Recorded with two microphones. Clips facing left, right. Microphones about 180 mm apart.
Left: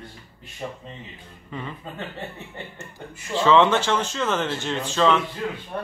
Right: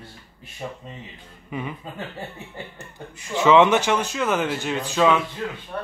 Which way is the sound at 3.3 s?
15° right (ahead or behind).